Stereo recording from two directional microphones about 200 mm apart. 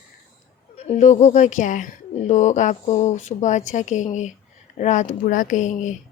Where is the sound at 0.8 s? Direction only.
35° left (ahead or behind).